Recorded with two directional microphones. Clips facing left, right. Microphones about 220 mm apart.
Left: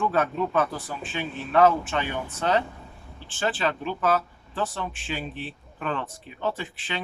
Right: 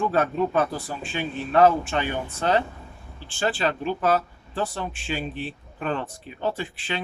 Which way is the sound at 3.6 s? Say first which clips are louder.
Right 2 dB; 40° right (ahead or behind).